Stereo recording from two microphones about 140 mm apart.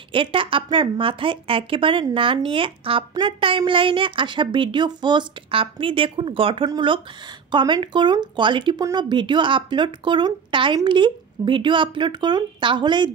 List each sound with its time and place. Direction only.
0.1 s a woman's voice: 40° right (ahead or behind)